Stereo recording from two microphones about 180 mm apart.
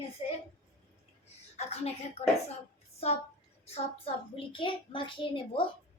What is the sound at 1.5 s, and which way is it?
Speech, 35° left (ahead or behind).